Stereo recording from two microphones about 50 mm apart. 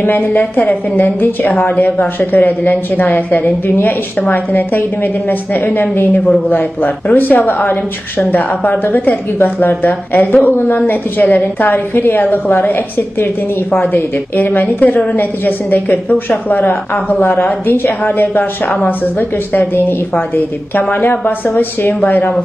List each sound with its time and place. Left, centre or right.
0.0 s a woman's voice: left
19.1 s a woman's voice: left